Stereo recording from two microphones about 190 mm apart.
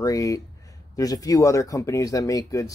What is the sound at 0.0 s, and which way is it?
Speech, 20° left (ahead or behind).